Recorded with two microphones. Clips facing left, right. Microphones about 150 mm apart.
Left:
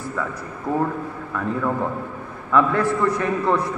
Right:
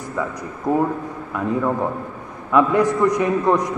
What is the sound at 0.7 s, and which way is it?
A man's voice, 15° right (ahead or behind).